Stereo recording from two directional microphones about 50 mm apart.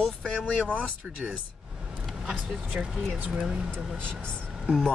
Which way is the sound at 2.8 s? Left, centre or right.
Right.